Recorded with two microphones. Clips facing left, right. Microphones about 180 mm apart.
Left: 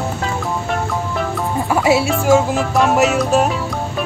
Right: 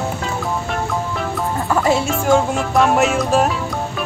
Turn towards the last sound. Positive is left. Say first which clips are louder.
# left 1 dB
turn(degrees=0)  # may be behind; listen again after turning